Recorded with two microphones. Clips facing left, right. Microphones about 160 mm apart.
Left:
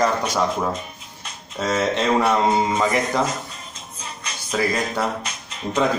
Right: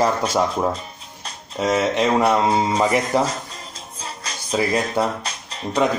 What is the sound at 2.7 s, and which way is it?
Music, 35° right (ahead or behind).